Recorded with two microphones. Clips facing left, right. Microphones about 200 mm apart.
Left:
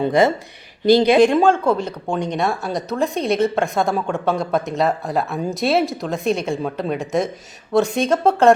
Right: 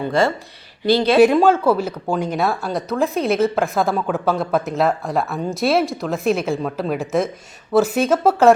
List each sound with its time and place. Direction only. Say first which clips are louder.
0.0 s speech: left 3 dB; 20° left (ahead or behind)
1.2 s speech: right 1 dB; 5° right (ahead or behind)